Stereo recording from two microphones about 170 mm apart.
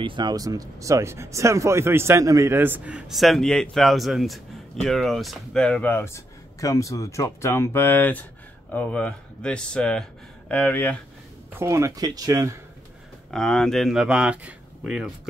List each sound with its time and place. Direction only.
0.0 s speech: 25° right (ahead or behind); by 11.0 s 10° left (ahead or behind)
11.5 s speech: 15° right (ahead or behind)
13.3 s speech: 5° left (ahead or behind)